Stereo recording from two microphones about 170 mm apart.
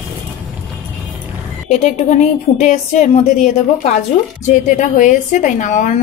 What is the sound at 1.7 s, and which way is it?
A woman's voice, 45° left (ahead or behind).